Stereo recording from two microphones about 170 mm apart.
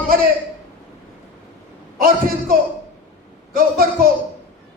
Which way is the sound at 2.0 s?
60° right (ahead or behind).